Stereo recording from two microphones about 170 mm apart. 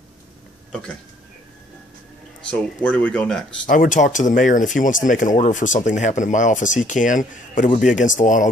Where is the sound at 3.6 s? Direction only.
50° left (ahead or behind).